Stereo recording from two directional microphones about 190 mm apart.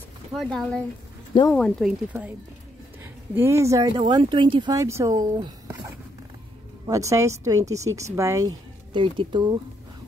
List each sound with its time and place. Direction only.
0.3 s speech: centre (ahead or behind)
3.3 s speech: 15° right (ahead or behind)